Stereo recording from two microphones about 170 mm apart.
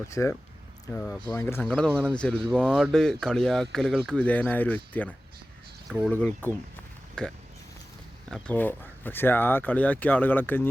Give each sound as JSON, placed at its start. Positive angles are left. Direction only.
{"t": 0.1, "sound": "speech", "side_deg": 15}